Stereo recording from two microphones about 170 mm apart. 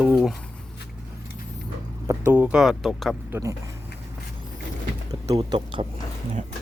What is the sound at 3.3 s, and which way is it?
Speech, 15° right (ahead or behind).